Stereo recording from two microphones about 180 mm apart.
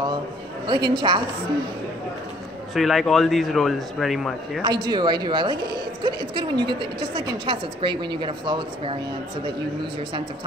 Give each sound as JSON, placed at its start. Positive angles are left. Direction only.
{"t": 0.7, "sound": "a woman's voice", "side_deg": -25}
{"t": 2.7, "sound": "a man's voice", "side_deg": 0}
{"t": 4.6, "sound": "a woman's voice", "side_deg": -25}